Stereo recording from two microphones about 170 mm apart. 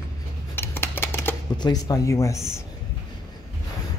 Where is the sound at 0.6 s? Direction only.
15° left (ahead or behind).